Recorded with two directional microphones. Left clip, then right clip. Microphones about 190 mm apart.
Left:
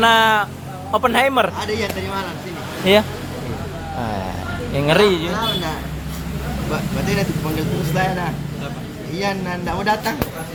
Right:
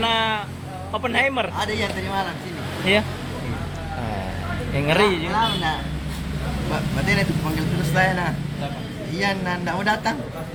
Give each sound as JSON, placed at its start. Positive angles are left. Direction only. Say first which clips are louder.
{"t": 0.0, "sound": "speech", "louder": "left 8 dB", "side_deg": 30}
{"t": 1.5, "sound": "speech", "louder": "left 2 dB", "side_deg": 0}
{"t": 2.9, "sound": "speech", "louder": "left 5 dB", "side_deg": 20}
{"t": 4.7, "sound": "a man's voice", "louder": "left 4 dB", "side_deg": 15}
{"t": 7.9, "sound": "speech", "louder": "right 2 dB", "side_deg": 0}